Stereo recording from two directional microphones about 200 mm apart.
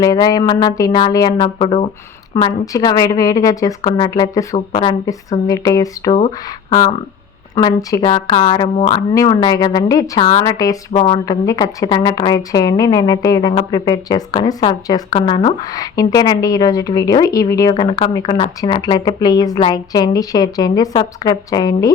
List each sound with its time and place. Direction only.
0.0 s a woman's voice: 20° left (ahead or behind)
1.5 s a woman's voice: 30° left (ahead or behind)
2.3 s a woman's voice: 15° left (ahead or behind)
6.1 s speech: 35° left (ahead or behind)
7.5 s a woman's voice: 20° left (ahead or behind)
9.1 s a woman's voice: 20° left (ahead or behind)
10.9 s speech: 30° left (ahead or behind)
11.3 s a woman's voice: 15° left (ahead or behind)